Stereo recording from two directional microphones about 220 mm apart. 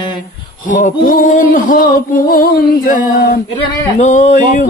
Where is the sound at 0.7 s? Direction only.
35° left (ahead or behind).